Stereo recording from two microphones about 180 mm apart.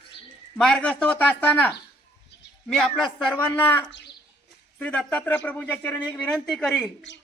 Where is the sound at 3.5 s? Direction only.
10° left (ahead or behind).